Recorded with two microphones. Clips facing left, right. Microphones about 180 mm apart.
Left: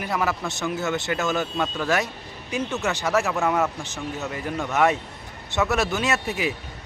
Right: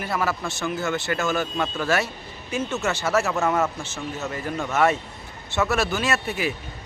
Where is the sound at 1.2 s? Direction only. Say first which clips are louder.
Right 1 dB; 20° left (ahead or behind).